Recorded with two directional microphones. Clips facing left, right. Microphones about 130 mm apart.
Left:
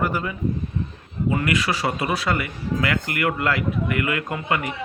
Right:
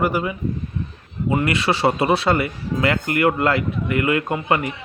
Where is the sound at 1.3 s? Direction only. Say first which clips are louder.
Right 4 dB; 30° right (ahead or behind).